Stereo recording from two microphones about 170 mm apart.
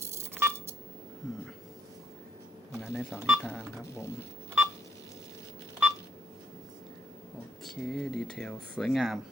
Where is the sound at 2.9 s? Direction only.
Centre (ahead or behind).